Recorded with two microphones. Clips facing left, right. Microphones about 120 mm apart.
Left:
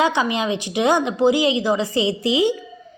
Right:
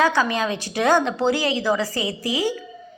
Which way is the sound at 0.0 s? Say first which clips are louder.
Even; 20° left (ahead or behind).